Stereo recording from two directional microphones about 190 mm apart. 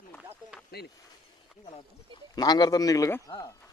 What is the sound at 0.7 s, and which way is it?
Speech, 55° left (ahead or behind).